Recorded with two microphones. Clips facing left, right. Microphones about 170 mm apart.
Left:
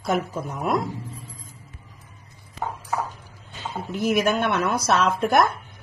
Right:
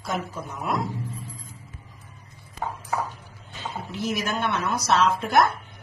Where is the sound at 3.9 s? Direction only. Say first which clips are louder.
Left 7 dB; 55° left (ahead or behind).